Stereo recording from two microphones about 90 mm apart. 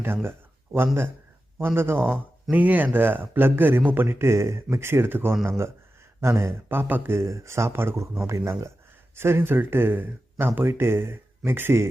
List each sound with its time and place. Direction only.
0.0 s a man's voice: 25° right (ahead or behind)
1.5 s a man's voice: 25° right (ahead or behind)